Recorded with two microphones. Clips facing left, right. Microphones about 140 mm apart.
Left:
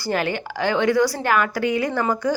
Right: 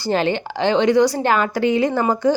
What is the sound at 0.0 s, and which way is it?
A woman's voice, 25° right (ahead or behind).